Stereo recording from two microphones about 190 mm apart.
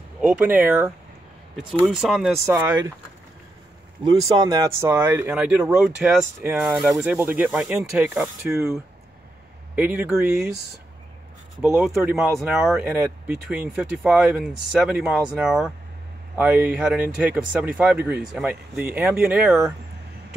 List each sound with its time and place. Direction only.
0.2 s speech: 10° right (ahead or behind)
4.0 s speech: 20° right (ahead or behind)
9.8 s speech: 10° right (ahead or behind)
12.0 s speech: 5° right (ahead or behind)